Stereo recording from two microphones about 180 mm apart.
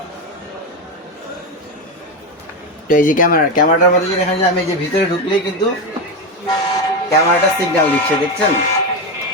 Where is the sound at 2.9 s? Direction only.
50° left (ahead or behind).